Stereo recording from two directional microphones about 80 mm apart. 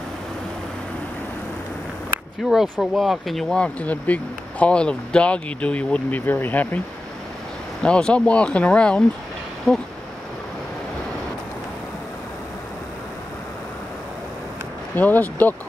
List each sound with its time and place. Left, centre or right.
2.4 s speech: centre
3.5 s speech: centre
7.8 s speech: centre
15.0 s speech: left